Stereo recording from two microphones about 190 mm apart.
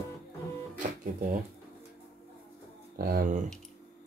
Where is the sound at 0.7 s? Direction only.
45° right (ahead or behind).